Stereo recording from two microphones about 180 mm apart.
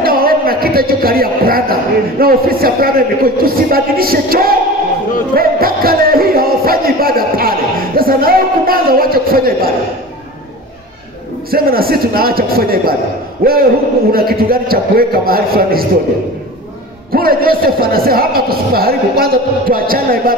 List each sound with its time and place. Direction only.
0.0 s a man's voice: 55° right (ahead or behind)
5.3 s music: 55° right (ahead or behind)
11.5 s a man's voice: 55° right (ahead or behind)
17.1 s a man's voice: 55° right (ahead or behind)